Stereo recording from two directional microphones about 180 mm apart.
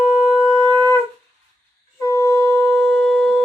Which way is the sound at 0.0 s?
5° right (ahead or behind).